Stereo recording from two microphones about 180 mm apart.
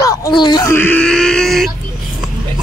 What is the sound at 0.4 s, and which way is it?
Speech, 25° left (ahead or behind).